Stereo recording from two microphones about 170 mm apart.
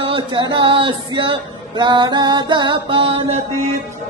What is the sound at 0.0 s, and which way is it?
Speech, 30° right (ahead or behind).